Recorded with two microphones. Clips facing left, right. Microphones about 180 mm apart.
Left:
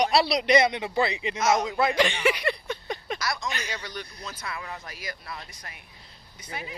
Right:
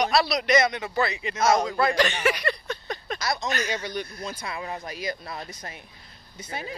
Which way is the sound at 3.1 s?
25° right (ahead or behind).